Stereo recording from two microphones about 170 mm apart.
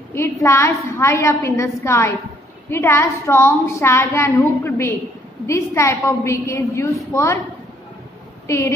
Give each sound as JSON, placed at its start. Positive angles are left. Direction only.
{"t": 0.1, "sound": "a woman's voice", "side_deg": 15}
{"t": 8.5, "sound": "a woman's voice", "side_deg": 15}